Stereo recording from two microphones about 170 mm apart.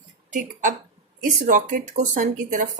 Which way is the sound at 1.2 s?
50° right (ahead or behind).